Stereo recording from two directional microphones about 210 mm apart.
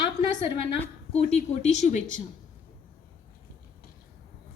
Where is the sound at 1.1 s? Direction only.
30° left (ahead or behind).